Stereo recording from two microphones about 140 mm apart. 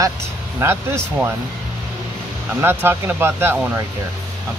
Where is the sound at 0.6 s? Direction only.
15° right (ahead or behind).